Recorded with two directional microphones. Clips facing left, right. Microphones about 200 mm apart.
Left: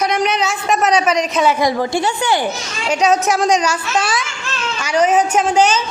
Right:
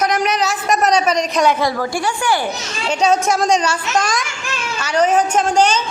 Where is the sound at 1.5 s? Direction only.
20° left (ahead or behind).